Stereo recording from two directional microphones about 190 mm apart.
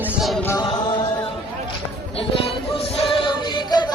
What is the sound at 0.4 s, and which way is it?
Music, 15° left (ahead or behind).